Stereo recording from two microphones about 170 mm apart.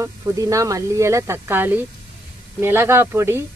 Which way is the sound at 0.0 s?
20° right (ahead or behind).